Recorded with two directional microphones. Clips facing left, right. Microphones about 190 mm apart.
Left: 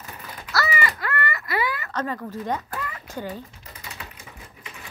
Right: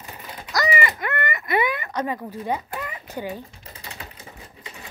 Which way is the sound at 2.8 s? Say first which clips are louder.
Right 1 dB; 20° right (ahead or behind).